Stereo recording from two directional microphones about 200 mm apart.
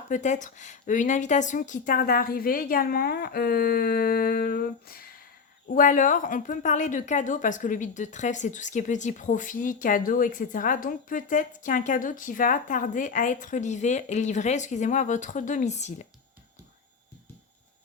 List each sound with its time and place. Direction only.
0.1 s a woman's voice: 40° left (ahead or behind)